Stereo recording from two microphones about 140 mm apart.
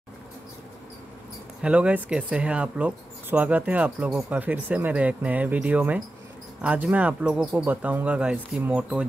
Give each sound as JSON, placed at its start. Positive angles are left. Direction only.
{"t": 1.6, "sound": "speech", "side_deg": -10}